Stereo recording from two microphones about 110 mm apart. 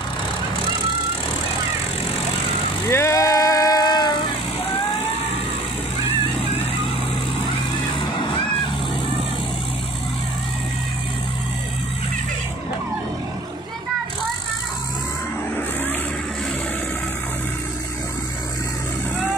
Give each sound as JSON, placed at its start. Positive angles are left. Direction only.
{"t": 2.9, "sound": "vehicle", "side_deg": 25}